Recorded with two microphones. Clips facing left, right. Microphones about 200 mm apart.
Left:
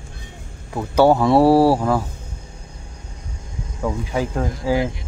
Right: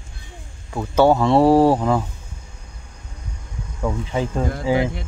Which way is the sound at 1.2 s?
10° left (ahead or behind).